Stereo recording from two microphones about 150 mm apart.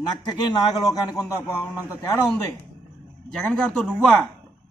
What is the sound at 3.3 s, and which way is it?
Speech, 5° left (ahead or behind).